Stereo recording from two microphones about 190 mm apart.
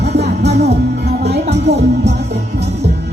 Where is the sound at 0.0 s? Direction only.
60° right (ahead or behind).